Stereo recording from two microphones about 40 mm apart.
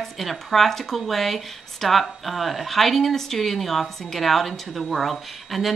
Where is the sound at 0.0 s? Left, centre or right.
Centre.